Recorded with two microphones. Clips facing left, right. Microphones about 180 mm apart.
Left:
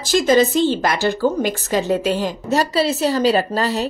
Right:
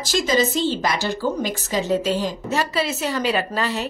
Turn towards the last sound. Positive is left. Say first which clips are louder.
# left 4 dB
turn(degrees=35)  # may be behind; listen again after turning